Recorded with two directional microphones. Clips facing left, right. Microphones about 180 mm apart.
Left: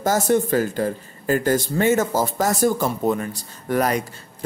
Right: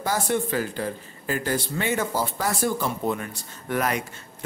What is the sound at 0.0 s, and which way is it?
Speech, 45° left (ahead or behind).